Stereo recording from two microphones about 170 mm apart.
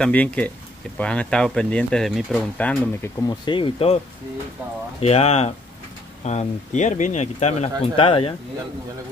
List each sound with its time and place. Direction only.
0.0 s speech: 10° left (ahead or behind)
3.3 s speech: 30° left (ahead or behind)
5.0 s speech: 35° left (ahead or behind)